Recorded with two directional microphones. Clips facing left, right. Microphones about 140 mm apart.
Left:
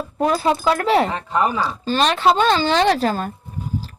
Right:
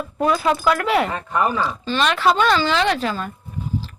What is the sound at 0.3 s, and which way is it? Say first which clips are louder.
Speech: even; 35° left (ahead or behind).